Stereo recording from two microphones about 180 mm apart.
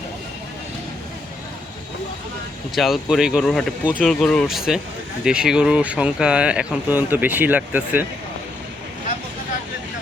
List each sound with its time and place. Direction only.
2.7 s speech: centre (ahead or behind)